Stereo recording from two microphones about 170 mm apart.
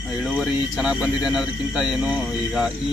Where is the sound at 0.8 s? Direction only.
5° right (ahead or behind).